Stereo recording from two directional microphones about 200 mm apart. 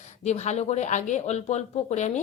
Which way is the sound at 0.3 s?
35° left (ahead or behind).